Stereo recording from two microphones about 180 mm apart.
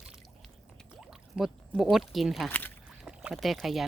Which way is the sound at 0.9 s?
Centre (ahead or behind).